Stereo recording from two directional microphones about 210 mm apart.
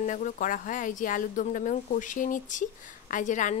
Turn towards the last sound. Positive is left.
turn(degrees=40)  # may be behind; listen again after turning